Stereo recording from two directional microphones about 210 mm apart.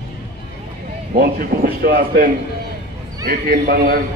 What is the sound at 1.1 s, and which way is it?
Speech, 45° right (ahead or behind).